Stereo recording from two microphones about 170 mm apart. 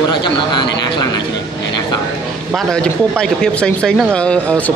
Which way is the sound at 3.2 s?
5° left (ahead or behind).